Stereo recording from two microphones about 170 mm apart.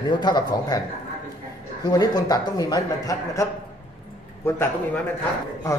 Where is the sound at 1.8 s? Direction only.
25° left (ahead or behind).